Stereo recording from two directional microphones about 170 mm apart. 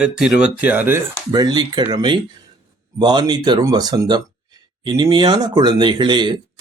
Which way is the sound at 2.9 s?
25° right (ahead or behind).